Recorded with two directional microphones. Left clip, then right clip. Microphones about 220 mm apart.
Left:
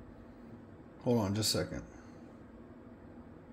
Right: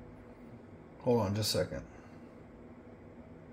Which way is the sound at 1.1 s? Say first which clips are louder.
Even; 30° left (ahead or behind).